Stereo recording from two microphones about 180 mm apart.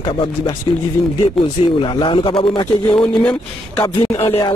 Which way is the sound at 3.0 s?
5° left (ahead or behind).